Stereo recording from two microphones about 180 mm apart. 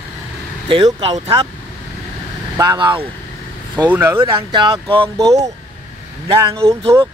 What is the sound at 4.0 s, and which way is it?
Speech, 15° right (ahead or behind).